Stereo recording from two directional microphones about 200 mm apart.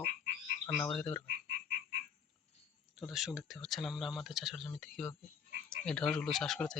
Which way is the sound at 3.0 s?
Centre (ahead or behind).